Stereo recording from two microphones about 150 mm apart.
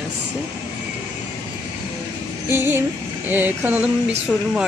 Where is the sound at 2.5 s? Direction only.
15° right (ahead or behind).